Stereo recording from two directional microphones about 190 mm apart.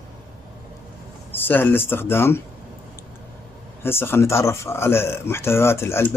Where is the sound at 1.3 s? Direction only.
10° left (ahead or behind).